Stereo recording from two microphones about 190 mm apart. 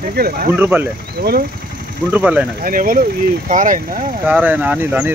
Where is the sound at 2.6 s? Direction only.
45° right (ahead or behind).